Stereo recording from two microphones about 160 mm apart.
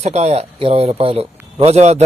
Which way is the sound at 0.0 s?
45° right (ahead or behind).